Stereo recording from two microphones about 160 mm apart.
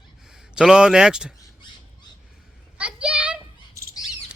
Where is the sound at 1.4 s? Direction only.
25° left (ahead or behind).